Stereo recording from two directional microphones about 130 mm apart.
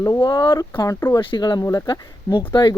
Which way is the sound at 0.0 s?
30° left (ahead or behind).